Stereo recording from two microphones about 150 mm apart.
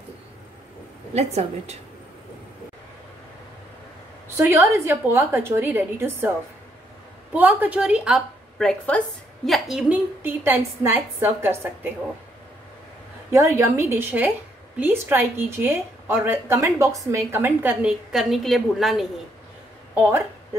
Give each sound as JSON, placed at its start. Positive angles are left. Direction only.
{"t": 1.1, "sound": "a woman's voice", "side_deg": -45}
{"t": 4.4, "sound": "a woman's voice", "side_deg": -20}
{"t": 7.3, "sound": "a woman's voice", "side_deg": -10}
{"t": 10.2, "sound": "a woman's voice", "side_deg": -15}
{"t": 13.3, "sound": "a woman's voice", "side_deg": -20}
{"t": 18.1, "sound": "a woman's voice", "side_deg": 0}
{"t": 20.0, "sound": "a woman's voice", "side_deg": -15}